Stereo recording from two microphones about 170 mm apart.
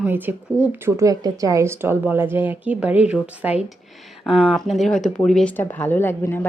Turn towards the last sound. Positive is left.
turn(degrees=15)  # may be behind; listen again after turning